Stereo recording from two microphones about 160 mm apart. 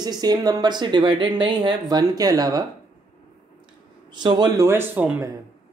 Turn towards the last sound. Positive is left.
turn(degrees=-10)  # may be behind; listen again after turning